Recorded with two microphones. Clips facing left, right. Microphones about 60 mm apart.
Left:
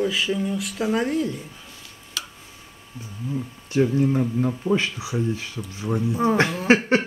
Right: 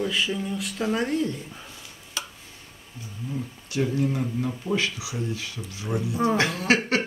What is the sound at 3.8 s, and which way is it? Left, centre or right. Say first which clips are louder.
Speech: left 4 dB; centre.